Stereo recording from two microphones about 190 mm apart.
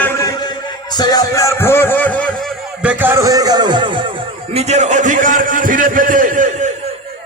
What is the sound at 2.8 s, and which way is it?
A man's voice, 10° right (ahead or behind).